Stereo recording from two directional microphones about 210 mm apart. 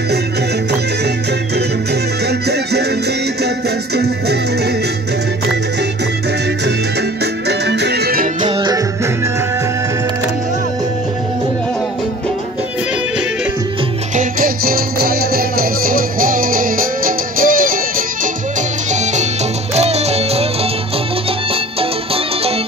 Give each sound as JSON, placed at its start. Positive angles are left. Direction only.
{"t": 2.2, "sound": "music", "side_deg": -50}
{"t": 7.4, "sound": "music", "side_deg": -55}
{"t": 8.5, "sound": "music", "side_deg": -20}
{"t": 14.1, "sound": "music", "side_deg": -45}
{"t": 21.7, "sound": "music", "side_deg": -25}